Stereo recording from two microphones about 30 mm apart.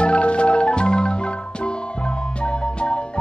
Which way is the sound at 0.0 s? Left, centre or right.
Left.